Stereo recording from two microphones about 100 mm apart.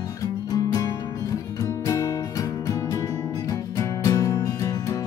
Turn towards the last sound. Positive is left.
turn(degrees=35)  # may be behind; listen again after turning